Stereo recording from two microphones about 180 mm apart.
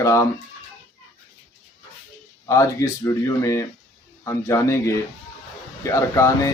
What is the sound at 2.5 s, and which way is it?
Speech, 15° left (ahead or behind).